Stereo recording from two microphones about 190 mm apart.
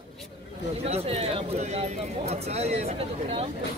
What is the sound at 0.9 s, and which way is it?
Speech, 35° right (ahead or behind).